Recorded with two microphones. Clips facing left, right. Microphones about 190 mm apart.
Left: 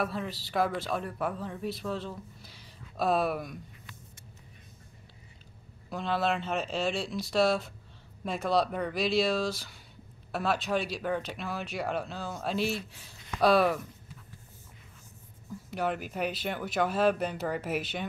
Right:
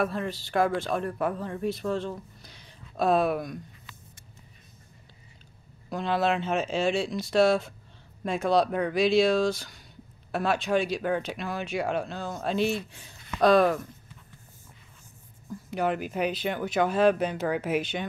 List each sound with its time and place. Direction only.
0.0 s speech: centre (ahead or behind)
5.9 s speech: centre (ahead or behind)
15.7 s speech: centre (ahead or behind)